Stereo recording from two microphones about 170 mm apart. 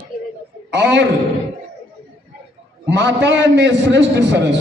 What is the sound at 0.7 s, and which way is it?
Speech, 90° right.